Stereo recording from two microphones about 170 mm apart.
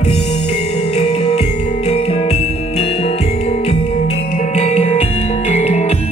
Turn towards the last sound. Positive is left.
turn(degrees=40)  # may be behind; listen again after turning